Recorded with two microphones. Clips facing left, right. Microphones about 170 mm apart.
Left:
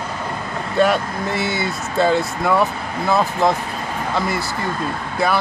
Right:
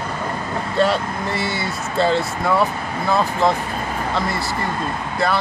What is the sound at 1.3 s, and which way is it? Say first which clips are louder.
Speech: left 4 dB; 20° left (ahead or behind).